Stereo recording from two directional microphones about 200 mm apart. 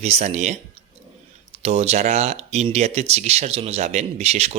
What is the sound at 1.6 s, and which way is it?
Speech, 30° right (ahead or behind).